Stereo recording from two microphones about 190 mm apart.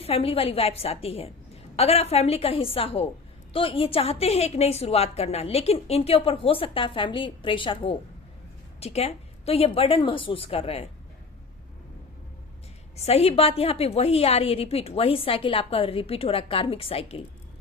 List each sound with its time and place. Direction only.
0.0 s a woman's voice: 30° left (ahead or behind)
13.0 s a woman's voice: 35° left (ahead or behind)